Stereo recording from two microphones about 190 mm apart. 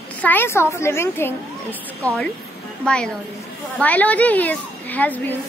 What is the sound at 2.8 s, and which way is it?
A woman's voice, 5° left (ahead or behind).